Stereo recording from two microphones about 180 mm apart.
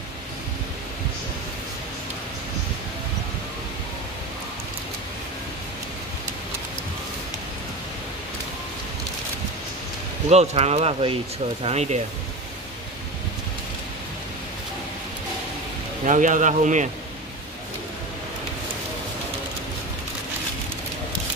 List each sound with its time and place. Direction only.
10.3 s speech: 35° right (ahead or behind)
16.1 s speech: 45° right (ahead or behind)